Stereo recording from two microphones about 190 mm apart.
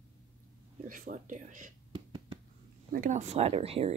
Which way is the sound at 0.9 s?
45° right (ahead or behind).